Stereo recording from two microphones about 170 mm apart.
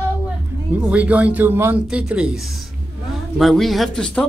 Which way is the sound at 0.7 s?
5° right (ahead or behind).